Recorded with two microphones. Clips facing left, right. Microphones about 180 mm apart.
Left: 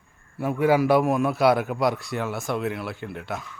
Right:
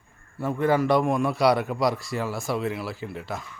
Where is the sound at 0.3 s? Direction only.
10° left (ahead or behind).